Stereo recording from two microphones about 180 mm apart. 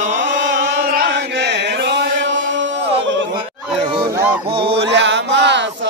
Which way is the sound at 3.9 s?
20° right (ahead or behind).